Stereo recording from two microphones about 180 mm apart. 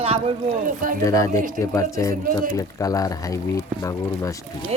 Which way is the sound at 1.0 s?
15° left (ahead or behind).